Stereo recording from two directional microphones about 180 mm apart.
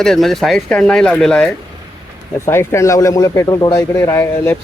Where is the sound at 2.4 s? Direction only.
15° left (ahead or behind).